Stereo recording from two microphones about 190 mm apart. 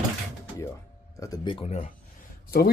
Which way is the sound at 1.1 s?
20° left (ahead or behind).